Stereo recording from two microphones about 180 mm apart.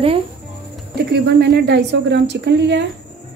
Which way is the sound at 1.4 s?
70° right (ahead or behind).